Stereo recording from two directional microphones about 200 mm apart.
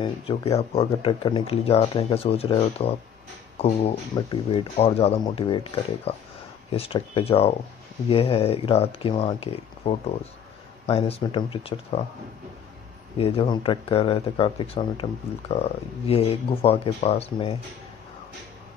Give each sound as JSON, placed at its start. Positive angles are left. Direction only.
{"t": 0.0, "sound": "speech", "side_deg": 30}
{"t": 13.2, "sound": "speech", "side_deg": 25}